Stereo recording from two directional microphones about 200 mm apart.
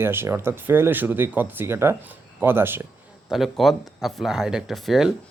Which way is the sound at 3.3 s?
Centre (ahead or behind).